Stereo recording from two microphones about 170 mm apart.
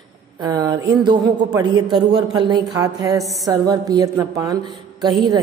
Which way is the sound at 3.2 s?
Centre (ahead or behind).